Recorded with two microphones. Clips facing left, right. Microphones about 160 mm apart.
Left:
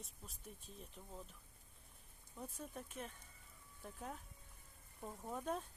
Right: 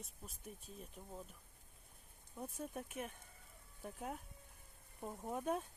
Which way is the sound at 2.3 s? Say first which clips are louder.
Right 4 dB; 10° right (ahead or behind).